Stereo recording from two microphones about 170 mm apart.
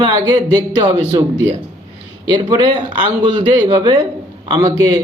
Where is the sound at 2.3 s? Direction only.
25° right (ahead or behind).